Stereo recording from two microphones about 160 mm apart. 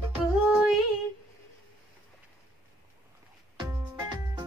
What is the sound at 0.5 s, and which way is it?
Female singing, centre (ahead or behind).